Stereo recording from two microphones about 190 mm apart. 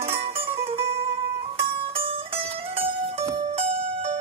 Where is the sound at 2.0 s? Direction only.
30° right (ahead or behind).